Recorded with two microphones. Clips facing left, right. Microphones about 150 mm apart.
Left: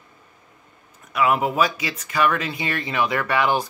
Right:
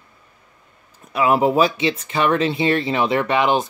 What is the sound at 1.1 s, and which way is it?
Speech, 30° right (ahead or behind).